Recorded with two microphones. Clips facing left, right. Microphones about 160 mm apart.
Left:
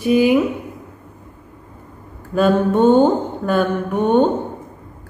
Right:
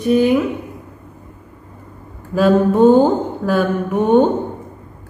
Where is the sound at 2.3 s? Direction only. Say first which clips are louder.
Right 2 dB; centre (ahead or behind).